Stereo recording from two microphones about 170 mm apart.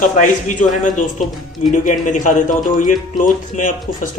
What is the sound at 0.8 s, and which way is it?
Speech, 50° left (ahead or behind).